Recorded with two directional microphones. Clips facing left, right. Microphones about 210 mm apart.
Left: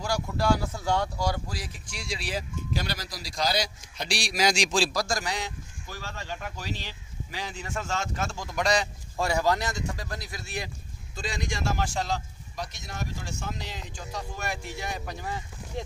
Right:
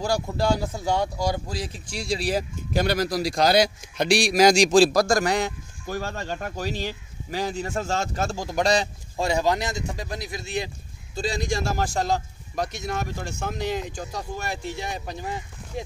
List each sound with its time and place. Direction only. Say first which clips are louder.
0.0 s speech: right 4 dB; 25° right (ahead or behind)
11.1 s speech: right 7 dB; 35° right (ahead or behind)
15.7 s speech: right 2 dB; 10° right (ahead or behind)